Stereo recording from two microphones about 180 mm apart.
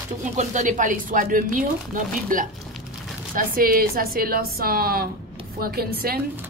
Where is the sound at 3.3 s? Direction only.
50° right (ahead or behind).